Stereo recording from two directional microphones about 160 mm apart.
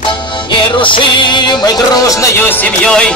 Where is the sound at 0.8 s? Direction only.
30° left (ahead or behind); by 3.1 s 5° left (ahead or behind).